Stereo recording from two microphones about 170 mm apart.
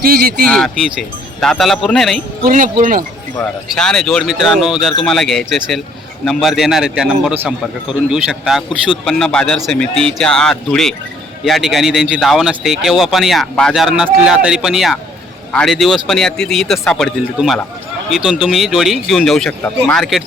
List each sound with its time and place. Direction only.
0.0 s speech: 60° right (ahead or behind)
0.4 s a man's voice: 5° left (ahead or behind)
2.4 s speech: 50° right (ahead or behind)
3.3 s a man's voice: 5° left (ahead or behind)